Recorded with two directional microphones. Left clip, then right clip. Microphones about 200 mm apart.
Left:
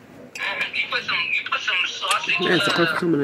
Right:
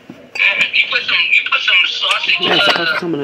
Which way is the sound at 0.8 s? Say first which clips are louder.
Right 9 dB; 15° right (ahead or behind).